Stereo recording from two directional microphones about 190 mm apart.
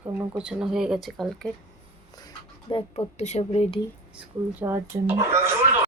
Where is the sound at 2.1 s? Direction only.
20° left (ahead or behind).